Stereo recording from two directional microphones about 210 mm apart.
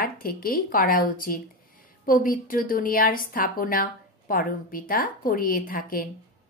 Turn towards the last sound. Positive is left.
turn(degrees=45)  # may be behind; listen again after turning